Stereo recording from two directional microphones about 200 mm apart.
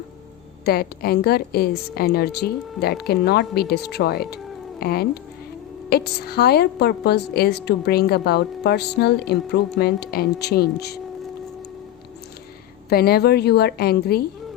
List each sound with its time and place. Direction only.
0.6 s a woman's voice: 50° left (ahead or behind)
12.9 s a woman's voice: 50° left (ahead or behind)